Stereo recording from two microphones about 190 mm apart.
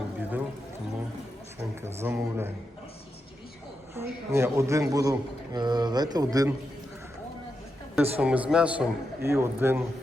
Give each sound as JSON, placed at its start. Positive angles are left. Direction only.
{"t": 0.2, "sound": "music", "side_deg": -10}
{"t": 1.8, "sound": "a man's voice", "side_deg": -10}
{"t": 3.9, "sound": "a man's voice", "side_deg": -15}
{"t": 8.1, "sound": "a man's voice", "side_deg": -5}